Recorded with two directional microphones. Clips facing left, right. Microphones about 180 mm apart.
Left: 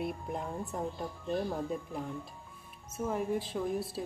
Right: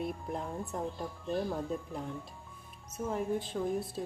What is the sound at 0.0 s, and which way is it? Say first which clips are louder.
Speech: even; centre (ahead or behind).